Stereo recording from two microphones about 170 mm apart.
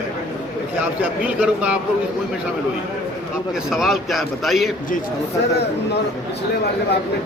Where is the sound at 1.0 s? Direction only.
5° right (ahead or behind).